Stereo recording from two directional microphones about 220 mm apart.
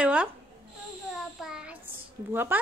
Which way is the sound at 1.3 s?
5° right (ahead or behind).